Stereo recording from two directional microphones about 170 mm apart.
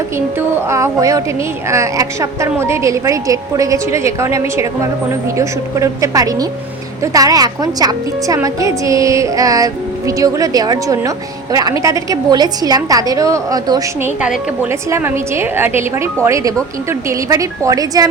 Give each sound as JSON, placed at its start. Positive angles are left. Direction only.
{"t": 0.3, "sound": "a woman's voice", "side_deg": -15}
{"t": 14.2, "sound": "a woman's voice", "side_deg": -10}